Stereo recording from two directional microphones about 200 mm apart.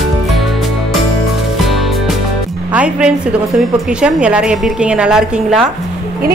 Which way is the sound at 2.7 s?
5° right (ahead or behind).